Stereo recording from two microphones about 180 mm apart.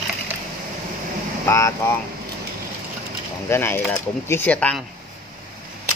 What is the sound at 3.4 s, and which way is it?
Speech, 15° left (ahead or behind).